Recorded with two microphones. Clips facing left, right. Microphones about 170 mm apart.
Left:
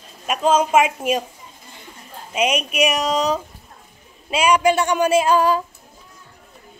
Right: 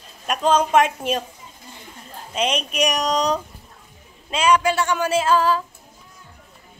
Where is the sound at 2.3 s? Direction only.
10° left (ahead or behind).